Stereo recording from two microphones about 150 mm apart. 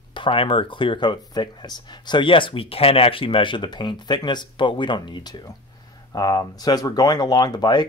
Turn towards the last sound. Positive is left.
turn(degrees=30)  # may be behind; listen again after turning